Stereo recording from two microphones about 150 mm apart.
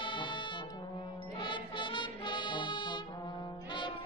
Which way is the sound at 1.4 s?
35° left (ahead or behind).